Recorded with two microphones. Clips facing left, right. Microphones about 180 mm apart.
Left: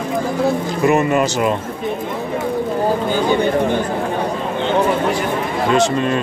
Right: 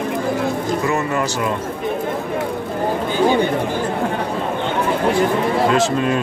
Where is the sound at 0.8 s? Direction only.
20° left (ahead or behind).